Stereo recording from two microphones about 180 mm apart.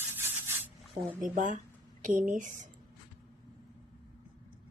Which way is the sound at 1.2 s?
45° right (ahead or behind).